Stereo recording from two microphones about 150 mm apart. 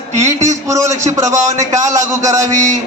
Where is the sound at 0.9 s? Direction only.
50° right (ahead or behind).